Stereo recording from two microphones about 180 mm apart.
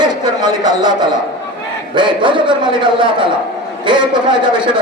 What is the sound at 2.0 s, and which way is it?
Speech, 25° right (ahead or behind).